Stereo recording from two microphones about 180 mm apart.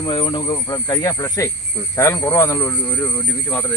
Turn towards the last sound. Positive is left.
turn(degrees=10)  # may be behind; listen again after turning